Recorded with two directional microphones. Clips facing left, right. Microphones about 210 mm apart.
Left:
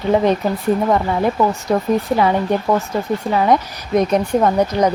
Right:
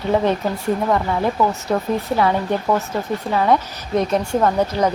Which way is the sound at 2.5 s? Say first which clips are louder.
Left 2 dB; 15° left (ahead or behind).